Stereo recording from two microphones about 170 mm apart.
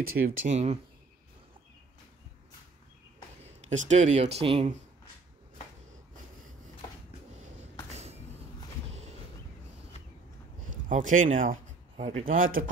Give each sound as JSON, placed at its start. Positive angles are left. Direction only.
{"t": 0.1, "sound": "speech", "side_deg": -55}
{"t": 3.6, "sound": "speech", "side_deg": -45}
{"t": 7.9, "sound": "a sound", "side_deg": -40}
{"t": 10.7, "sound": "speech", "side_deg": -50}